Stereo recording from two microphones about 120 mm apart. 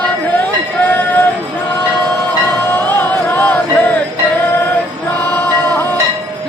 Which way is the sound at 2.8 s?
15° left (ahead or behind).